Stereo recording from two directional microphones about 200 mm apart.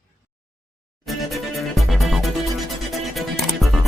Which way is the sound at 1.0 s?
Centre (ahead or behind).